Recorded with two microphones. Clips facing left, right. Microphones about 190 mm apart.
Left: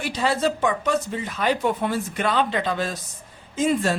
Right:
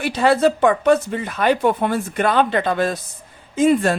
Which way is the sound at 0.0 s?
60° right (ahead or behind).